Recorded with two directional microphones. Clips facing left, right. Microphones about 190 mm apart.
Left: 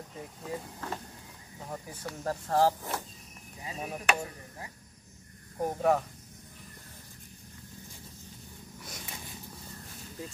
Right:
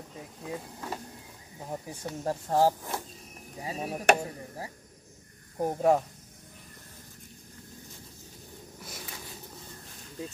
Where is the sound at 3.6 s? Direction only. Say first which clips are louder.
Right 4 dB; 30° right (ahead or behind).